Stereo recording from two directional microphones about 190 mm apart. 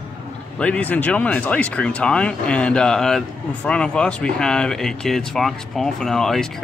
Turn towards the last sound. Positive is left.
turn(degrees=0)  # may be behind; listen again after turning